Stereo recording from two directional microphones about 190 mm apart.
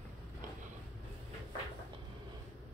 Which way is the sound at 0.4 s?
45° right (ahead or behind).